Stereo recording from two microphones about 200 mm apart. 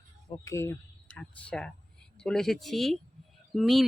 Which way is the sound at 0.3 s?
15° left (ahead or behind).